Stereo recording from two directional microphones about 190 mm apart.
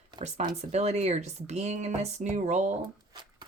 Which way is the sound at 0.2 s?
35° right (ahead or behind).